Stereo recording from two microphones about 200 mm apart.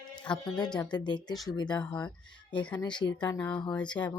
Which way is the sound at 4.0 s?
20° left (ahead or behind).